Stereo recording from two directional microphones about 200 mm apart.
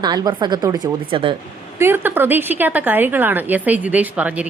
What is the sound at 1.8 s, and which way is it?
A woman's voice, 10° right (ahead or behind).